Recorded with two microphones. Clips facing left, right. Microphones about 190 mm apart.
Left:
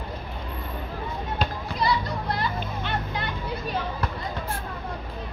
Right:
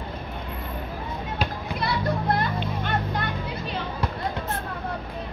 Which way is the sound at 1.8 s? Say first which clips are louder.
Even; 55° right (ahead or behind).